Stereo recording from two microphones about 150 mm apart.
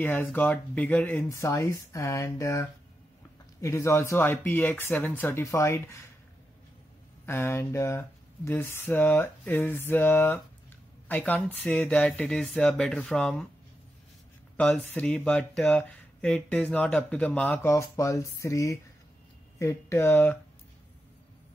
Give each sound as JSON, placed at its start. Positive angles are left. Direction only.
{"t": 0.0, "sound": "speech", "side_deg": 10}
{"t": 7.2, "sound": "speech", "side_deg": 15}
{"t": 14.6, "sound": "speech", "side_deg": 5}
{"t": 17.6, "sound": "speech", "side_deg": 20}